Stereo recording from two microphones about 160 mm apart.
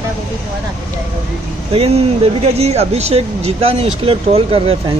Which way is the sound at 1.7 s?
40° right (ahead or behind).